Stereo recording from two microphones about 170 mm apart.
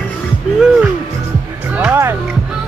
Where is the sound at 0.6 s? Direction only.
5° right (ahead or behind).